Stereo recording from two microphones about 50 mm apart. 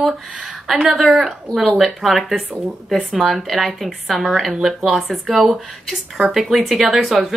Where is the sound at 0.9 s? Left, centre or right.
Centre.